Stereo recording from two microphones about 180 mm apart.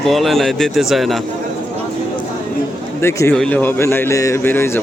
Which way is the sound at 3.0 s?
15° left (ahead or behind).